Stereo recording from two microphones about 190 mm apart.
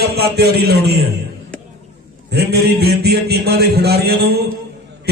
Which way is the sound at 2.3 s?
60° right (ahead or behind).